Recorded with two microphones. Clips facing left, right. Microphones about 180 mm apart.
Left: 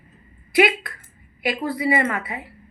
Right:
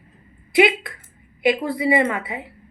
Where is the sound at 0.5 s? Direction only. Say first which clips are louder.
Right 2 dB; 20° right (ahead or behind).